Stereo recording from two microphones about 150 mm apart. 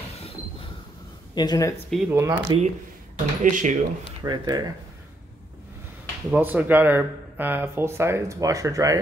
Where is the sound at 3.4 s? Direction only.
55° right (ahead or behind).